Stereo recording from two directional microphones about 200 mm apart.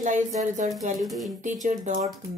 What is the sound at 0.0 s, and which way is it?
Speech, 40° right (ahead or behind).